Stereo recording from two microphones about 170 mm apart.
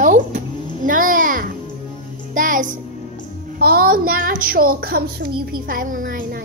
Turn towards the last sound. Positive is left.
turn(degrees=-55)  # may be behind; listen again after turning